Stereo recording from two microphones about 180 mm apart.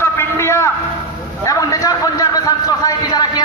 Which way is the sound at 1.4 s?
20° left (ahead or behind).